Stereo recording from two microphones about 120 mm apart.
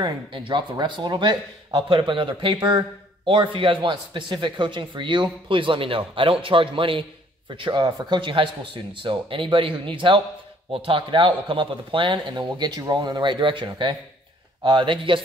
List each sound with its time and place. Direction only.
0.0 s a man's voice: 45° right (ahead or behind)